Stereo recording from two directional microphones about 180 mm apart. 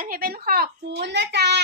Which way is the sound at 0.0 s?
55° right (ahead or behind).